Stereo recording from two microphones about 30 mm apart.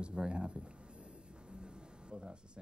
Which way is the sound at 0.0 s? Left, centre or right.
Right.